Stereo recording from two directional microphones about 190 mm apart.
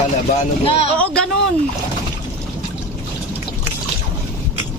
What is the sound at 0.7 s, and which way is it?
Speech, 30° left (ahead or behind).